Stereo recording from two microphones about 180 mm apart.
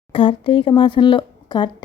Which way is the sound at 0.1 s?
30° left (ahead or behind).